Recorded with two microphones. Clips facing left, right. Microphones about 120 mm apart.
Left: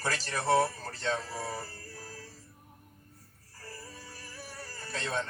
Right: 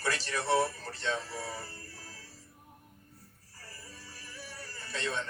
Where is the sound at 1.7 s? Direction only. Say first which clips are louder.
Left 3 dB; 40° left (ahead or behind).